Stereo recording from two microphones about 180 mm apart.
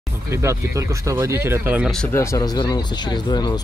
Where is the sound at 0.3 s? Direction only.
15° right (ahead or behind).